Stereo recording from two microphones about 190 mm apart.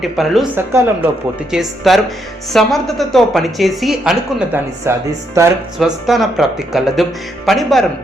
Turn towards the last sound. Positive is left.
turn(degrees=0)  # may be behind; listen again after turning